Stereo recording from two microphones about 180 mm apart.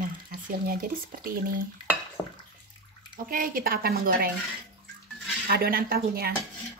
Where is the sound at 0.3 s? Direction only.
55° right (ahead or behind).